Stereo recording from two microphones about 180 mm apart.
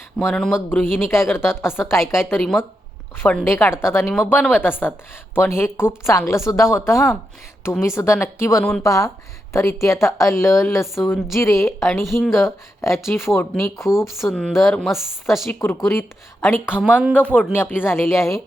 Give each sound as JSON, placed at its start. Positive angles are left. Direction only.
{"t": 0.2, "sound": "a woman's voice", "side_deg": 0}
{"t": 2.4, "sound": "speech", "side_deg": 0}
{"t": 3.5, "sound": "a woman's voice", "side_deg": 15}
{"t": 4.0, "sound": "speech", "side_deg": 0}
{"t": 4.6, "sound": "a woman's voice", "side_deg": 10}
{"t": 6.9, "sound": "speech", "side_deg": 0}
{"t": 7.6, "sound": "a woman's voice", "side_deg": 15}
{"t": 13.8, "sound": "speech", "side_deg": 0}
{"t": 15.6, "sound": "a woman's voice", "side_deg": 20}
{"t": 16.8, "sound": "speech", "side_deg": -5}
{"t": 17.2, "sound": "a woman's voice", "side_deg": 5}